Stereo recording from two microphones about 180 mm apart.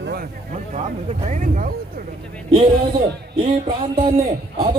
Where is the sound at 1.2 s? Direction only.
45° right (ahead or behind).